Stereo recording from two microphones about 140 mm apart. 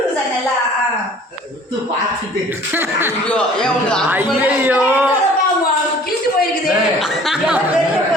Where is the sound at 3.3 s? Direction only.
10° left (ahead or behind).